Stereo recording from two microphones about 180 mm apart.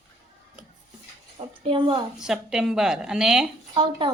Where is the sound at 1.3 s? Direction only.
30° right (ahead or behind).